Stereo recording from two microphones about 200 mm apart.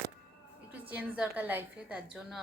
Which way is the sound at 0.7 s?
10° right (ahead or behind).